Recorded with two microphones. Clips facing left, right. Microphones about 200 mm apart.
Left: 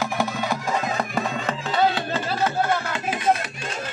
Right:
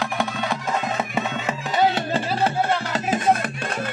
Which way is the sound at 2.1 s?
30° right (ahead or behind).